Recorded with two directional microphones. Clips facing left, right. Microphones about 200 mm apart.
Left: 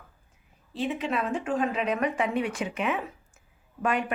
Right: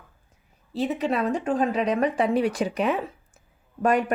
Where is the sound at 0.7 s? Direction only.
40° right (ahead or behind).